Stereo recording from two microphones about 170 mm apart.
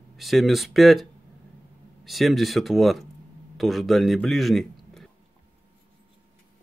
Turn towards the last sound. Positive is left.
turn(degrees=0)  # may be behind; listen again after turning